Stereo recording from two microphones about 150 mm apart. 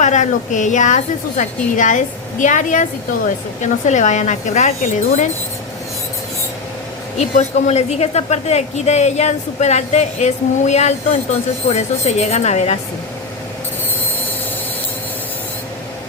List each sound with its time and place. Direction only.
0.0 s a woman's voice: 55° left (ahead or behind)
7.2 s a woman's voice: 50° left (ahead or behind)